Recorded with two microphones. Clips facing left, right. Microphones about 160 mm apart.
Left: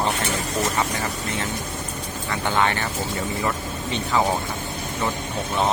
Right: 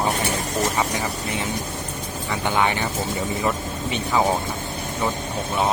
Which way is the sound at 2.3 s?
15° right (ahead or behind).